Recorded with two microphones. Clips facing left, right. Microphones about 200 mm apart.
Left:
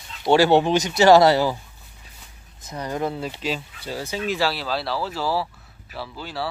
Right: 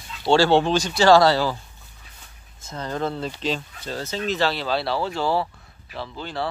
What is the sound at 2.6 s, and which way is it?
Speech, 15° left (ahead or behind).